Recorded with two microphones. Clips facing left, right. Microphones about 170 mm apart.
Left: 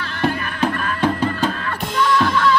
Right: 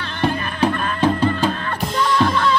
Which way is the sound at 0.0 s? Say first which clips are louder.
Even; 30° right (ahead or behind).